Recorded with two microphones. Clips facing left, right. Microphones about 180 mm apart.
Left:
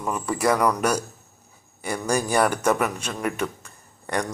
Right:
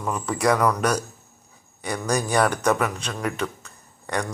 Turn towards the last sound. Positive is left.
turn(degrees=10)  # may be behind; listen again after turning